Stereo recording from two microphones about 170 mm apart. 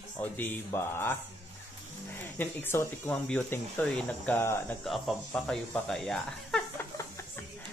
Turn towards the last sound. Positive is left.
turn(degrees=0)  # may be behind; listen again after turning